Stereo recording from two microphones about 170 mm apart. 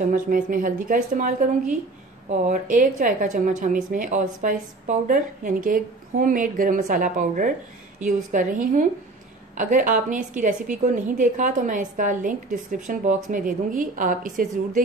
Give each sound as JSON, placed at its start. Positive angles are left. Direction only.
{"t": 0.1, "sound": "a woman's voice", "side_deg": -55}